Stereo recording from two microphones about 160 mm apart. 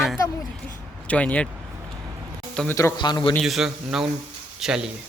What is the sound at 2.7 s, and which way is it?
Speech, 25° left (ahead or behind).